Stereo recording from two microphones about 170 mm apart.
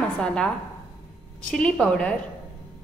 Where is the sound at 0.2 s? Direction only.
5° left (ahead or behind).